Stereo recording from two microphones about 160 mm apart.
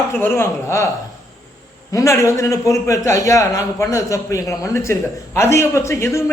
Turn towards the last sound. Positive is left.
turn(degrees=15)  # may be behind; listen again after turning